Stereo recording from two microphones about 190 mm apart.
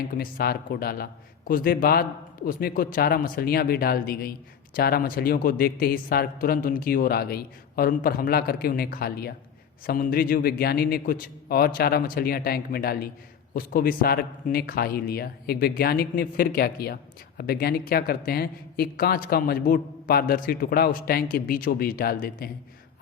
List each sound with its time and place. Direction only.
0.2 s speech: 50° left (ahead or behind)